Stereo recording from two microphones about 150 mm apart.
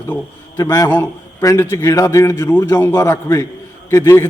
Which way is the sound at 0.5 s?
20° left (ahead or behind).